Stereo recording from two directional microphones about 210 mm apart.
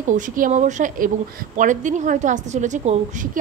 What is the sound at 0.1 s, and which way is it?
Speech, 40° right (ahead or behind).